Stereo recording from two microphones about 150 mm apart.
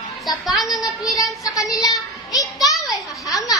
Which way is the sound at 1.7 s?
25° left (ahead or behind).